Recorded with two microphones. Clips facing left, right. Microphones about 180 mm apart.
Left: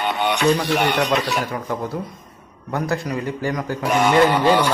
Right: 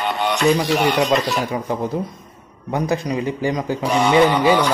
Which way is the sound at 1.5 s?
20° right (ahead or behind).